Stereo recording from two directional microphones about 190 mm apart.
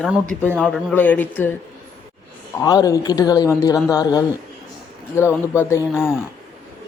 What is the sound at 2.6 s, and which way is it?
Speech, 20° left (ahead or behind).